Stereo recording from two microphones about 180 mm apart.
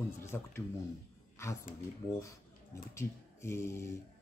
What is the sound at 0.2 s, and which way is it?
Speech, 15° left (ahead or behind).